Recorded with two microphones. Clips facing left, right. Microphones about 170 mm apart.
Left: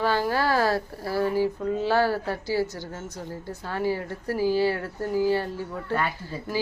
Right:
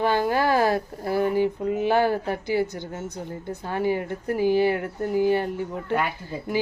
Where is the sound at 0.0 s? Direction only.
20° right (ahead or behind).